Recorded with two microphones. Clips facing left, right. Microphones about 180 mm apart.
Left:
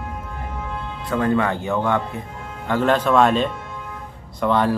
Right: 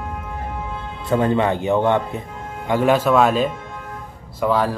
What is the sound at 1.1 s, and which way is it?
Speech, 20° right (ahead or behind).